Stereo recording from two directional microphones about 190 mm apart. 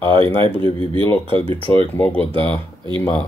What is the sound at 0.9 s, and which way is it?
Speech, 25° right (ahead or behind).